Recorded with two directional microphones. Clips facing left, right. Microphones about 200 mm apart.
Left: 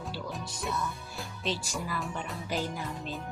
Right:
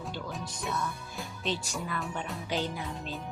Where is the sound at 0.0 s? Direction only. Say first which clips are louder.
Even; centre (ahead or behind).